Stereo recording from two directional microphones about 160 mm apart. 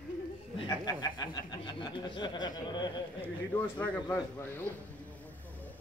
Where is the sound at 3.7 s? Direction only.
10° left (ahead or behind).